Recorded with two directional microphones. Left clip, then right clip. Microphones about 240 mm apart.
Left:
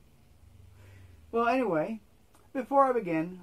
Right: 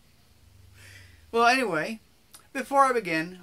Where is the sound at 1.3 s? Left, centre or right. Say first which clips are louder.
Right 5 dB; centre.